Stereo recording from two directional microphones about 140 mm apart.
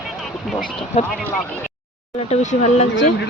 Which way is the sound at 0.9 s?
50° left (ahead or behind).